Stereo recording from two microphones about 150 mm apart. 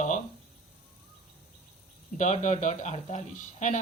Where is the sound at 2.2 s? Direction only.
50° left (ahead or behind).